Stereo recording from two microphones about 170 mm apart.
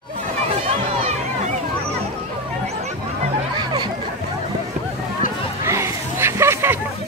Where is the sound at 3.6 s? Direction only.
25° right (ahead or behind).